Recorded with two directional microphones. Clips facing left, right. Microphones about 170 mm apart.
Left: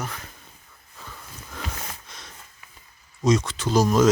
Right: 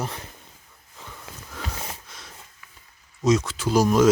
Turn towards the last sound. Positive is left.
turn(degrees=-10)  # may be behind; listen again after turning